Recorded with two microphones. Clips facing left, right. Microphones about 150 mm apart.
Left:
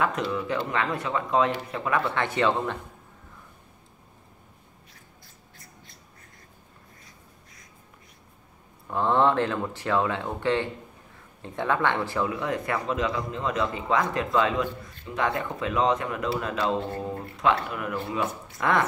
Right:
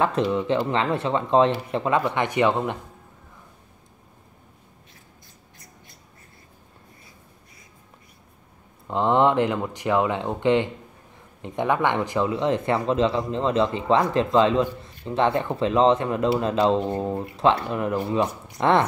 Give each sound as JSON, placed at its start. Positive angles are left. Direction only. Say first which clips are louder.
{"t": 0.0, "sound": "speech", "louder": "right 5 dB", "side_deg": -30}
{"t": 8.8, "sound": "speech", "louder": "right 3 dB", "side_deg": -20}